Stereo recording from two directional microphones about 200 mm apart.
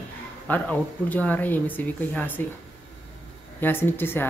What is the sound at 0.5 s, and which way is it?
Speech, 10° left (ahead or behind).